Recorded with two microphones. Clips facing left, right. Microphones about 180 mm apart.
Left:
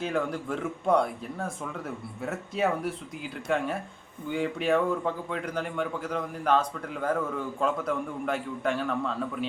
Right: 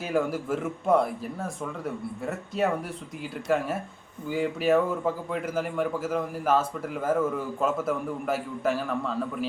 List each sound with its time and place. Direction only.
0.0 s a man's voice: 5° right (ahead or behind)